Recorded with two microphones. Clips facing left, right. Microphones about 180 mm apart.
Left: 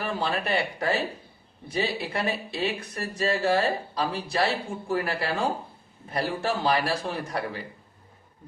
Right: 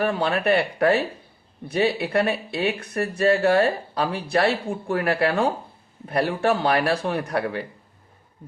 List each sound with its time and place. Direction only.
0.0 s speech: 60° right (ahead or behind)